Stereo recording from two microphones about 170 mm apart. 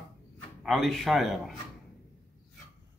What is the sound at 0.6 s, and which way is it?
Speech, centre (ahead or behind).